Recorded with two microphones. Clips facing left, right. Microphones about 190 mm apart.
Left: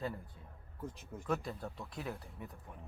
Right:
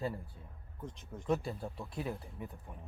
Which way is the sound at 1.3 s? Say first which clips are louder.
Right 3 dB; 30° right (ahead or behind).